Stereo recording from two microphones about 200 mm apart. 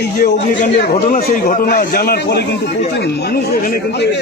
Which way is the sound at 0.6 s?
40° left (ahead or behind).